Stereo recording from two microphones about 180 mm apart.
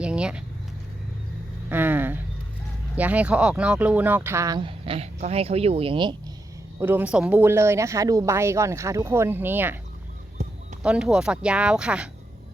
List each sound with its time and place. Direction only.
0.0 s vehicle: 5° right (ahead or behind)
1.7 s a sound: 10° right (ahead or behind)
2.9 s speech: 10° right (ahead or behind); by 6.1 s 30° right (ahead or behind)
6.7 s speech: 10° right (ahead or behind)
10.8 s speech: 5° right (ahead or behind)